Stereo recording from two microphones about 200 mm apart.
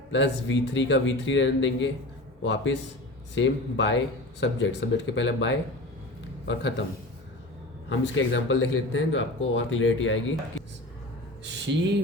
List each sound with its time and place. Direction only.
0.1 s speech: 65° left (ahead or behind)
7.9 s speech: 70° left (ahead or behind)
11.4 s a sound: 60° right (ahead or behind)